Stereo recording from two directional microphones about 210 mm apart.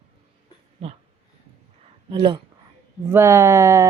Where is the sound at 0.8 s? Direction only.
30° right (ahead or behind).